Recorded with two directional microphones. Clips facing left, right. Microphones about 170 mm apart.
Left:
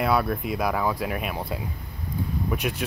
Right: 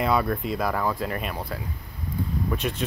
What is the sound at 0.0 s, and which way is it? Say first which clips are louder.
Speech: even; 5° left (ahead or behind).